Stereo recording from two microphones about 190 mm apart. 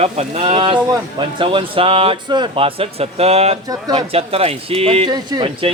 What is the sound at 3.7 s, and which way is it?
Speech, 20° right (ahead or behind).